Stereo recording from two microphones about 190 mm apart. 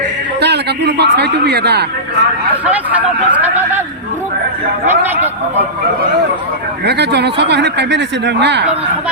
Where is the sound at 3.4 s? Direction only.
10° right (ahead or behind).